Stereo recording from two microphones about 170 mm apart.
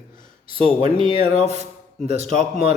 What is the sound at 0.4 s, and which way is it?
A man's voice, 30° right (ahead or behind).